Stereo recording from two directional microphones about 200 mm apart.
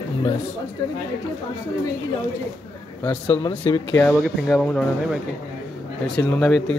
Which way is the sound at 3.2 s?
25° left (ahead or behind).